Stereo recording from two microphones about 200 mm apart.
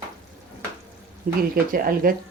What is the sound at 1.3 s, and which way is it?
Speech, 40° right (ahead or behind).